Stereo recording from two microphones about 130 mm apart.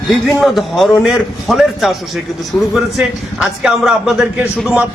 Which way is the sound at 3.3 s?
5° right (ahead or behind).